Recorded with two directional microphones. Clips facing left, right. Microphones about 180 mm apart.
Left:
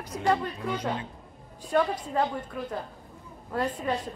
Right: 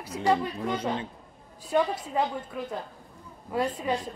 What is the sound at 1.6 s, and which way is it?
Speech, 10° right (ahead or behind).